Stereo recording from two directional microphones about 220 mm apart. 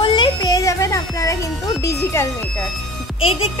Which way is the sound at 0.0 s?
20° left (ahead or behind).